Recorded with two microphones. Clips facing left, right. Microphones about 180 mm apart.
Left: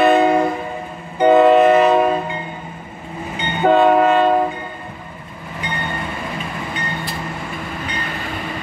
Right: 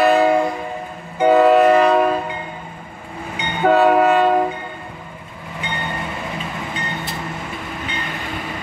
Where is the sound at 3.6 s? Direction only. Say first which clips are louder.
Left 1 dB; 5° right (ahead or behind).